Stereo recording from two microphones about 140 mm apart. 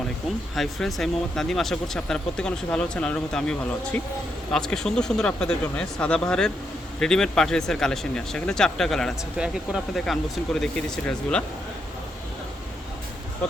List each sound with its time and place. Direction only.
0.5 s speech: centre (ahead or behind)